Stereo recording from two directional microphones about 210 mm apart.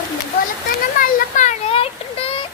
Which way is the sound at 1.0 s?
35° left (ahead or behind).